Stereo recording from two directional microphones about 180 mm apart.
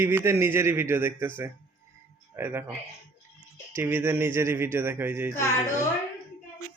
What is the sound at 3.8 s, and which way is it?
A man's voice, 15° right (ahead or behind).